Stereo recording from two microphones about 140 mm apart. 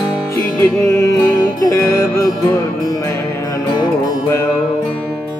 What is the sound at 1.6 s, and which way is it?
Music, 20° left (ahead or behind).